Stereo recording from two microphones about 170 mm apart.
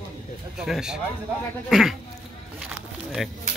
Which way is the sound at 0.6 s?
5° right (ahead or behind).